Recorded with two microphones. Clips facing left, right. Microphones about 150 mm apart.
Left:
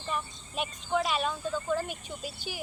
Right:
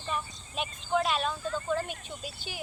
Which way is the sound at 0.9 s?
10° left (ahead or behind).